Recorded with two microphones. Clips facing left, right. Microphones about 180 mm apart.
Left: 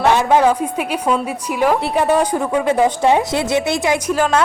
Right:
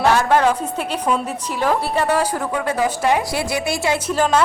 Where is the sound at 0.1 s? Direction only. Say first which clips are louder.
Left 4 dB; 20° left (ahead or behind).